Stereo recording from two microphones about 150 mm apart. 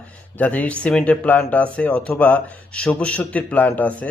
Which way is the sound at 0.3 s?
10° left (ahead or behind).